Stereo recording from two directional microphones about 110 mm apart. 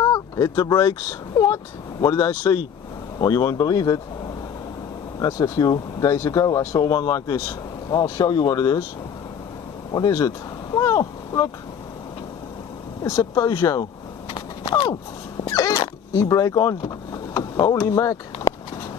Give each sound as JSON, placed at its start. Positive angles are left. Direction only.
{"t": 0.0, "sound": "speech", "side_deg": 30}
{"t": 5.2, "sound": "speech", "side_deg": 35}
{"t": 9.9, "sound": "speech", "side_deg": 35}
{"t": 13.0, "sound": "speech", "side_deg": 30}
{"t": 15.4, "sound": "a sound", "side_deg": 35}
{"t": 15.7, "sound": "a sound", "side_deg": 45}
{"t": 16.3, "sound": "speech", "side_deg": 30}